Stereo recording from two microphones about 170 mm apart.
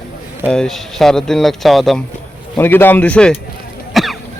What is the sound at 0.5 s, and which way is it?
Speech, 5° left (ahead or behind).